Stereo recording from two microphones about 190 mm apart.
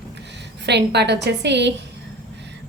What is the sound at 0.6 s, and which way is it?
A woman's voice, 65° right (ahead or behind).